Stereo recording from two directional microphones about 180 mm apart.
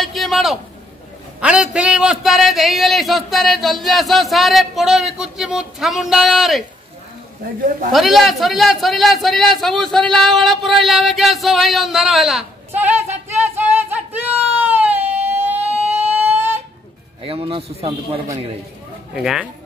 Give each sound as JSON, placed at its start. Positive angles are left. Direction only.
{"t": 0.0, "sound": "a sound", "side_deg": 0}
{"t": 1.4, "sound": "a man's voice", "side_deg": -5}
{"t": 7.9, "sound": "a man's voice", "side_deg": 0}
{"t": 14.6, "sound": "a sound", "side_deg": -10}
{"t": 17.2, "sound": "a man's voice", "side_deg": -30}
{"t": 19.1, "sound": "a man's voice", "side_deg": -5}